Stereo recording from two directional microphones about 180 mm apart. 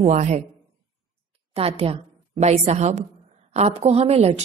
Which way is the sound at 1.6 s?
30° right (ahead or behind).